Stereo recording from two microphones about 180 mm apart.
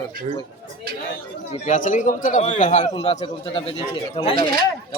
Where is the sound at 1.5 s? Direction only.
45° left (ahead or behind); by 4.6 s 30° left (ahead or behind).